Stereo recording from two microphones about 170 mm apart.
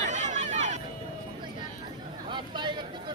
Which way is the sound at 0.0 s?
45° right (ahead or behind).